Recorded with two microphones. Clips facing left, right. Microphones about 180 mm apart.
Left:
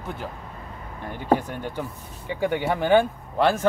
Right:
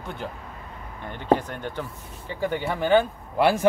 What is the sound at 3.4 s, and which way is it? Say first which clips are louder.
Speech: right 1 dB; 10° right (ahead or behind).